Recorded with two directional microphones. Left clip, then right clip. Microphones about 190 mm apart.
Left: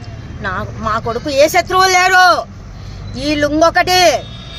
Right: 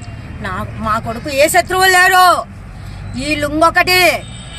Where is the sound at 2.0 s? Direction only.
25° left (ahead or behind).